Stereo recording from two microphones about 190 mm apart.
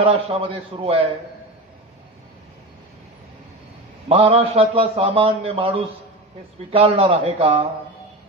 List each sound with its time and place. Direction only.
0.0 s a man's voice: 30° right (ahead or behind)
4.1 s a man's voice: 30° right (ahead or behind)